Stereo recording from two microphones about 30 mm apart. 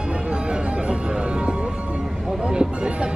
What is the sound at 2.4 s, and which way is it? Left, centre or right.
Speech, right.